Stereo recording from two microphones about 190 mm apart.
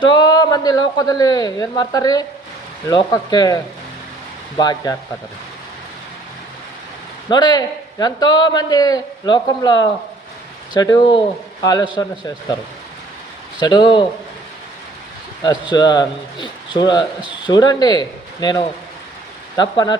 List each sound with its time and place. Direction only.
0.0 s a man's voice: 20° left (ahead or behind)
7.3 s a man's voice: 20° left (ahead or behind)
13.6 s a man's voice: 25° left (ahead or behind)
15.4 s a man's voice: 20° left (ahead or behind)